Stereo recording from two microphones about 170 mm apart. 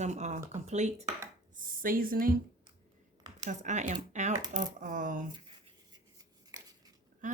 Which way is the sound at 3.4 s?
45° right (ahead or behind).